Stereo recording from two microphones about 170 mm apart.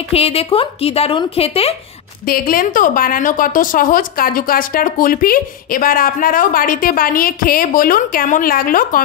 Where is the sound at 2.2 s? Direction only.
60° left (ahead or behind).